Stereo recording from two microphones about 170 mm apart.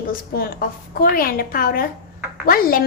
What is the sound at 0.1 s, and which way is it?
A woman's voice, 60° left (ahead or behind).